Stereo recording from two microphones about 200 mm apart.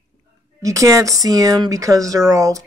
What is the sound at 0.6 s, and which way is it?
Speech, 15° right (ahead or behind).